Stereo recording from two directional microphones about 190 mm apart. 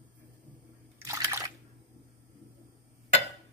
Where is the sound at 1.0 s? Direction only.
15° right (ahead or behind).